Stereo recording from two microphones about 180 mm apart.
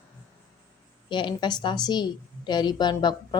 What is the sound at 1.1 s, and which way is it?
A woman's voice, 25° left (ahead or behind).